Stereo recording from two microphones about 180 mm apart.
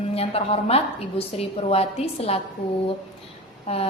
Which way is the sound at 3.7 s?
35° left (ahead or behind).